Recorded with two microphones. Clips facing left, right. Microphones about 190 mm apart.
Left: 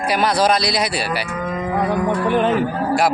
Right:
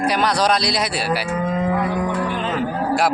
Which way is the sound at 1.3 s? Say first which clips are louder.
Right 3 dB; 30° right (ahead or behind).